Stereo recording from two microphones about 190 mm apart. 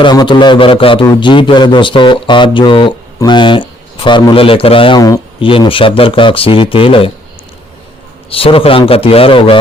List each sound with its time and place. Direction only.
0.0 s speech: 25° left (ahead or behind)
8.3 s speech: 30° left (ahead or behind)